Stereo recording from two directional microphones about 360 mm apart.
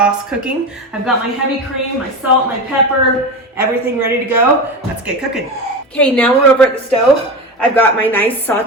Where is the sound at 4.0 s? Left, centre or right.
Centre.